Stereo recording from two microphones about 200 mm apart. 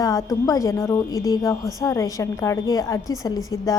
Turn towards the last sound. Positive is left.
turn(degrees=15)  # may be behind; listen again after turning